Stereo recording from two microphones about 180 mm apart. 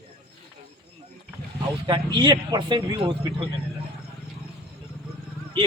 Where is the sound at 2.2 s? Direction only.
25° right (ahead or behind).